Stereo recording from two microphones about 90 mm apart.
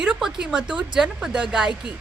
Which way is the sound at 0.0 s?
5° right (ahead or behind).